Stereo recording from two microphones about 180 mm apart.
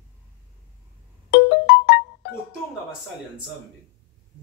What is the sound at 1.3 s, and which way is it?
Music, 75° left (ahead or behind).